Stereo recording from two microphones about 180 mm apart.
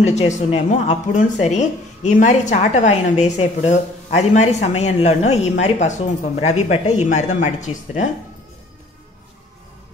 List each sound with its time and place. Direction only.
0.1 s speech: 40° left (ahead or behind)